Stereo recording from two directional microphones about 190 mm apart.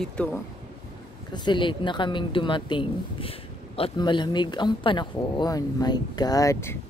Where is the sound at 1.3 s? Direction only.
25° left (ahead or behind).